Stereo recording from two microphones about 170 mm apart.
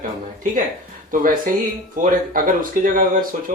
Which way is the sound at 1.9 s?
50° right (ahead or behind).